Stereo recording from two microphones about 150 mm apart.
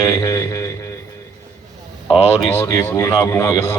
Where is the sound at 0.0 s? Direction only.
25° left (ahead or behind).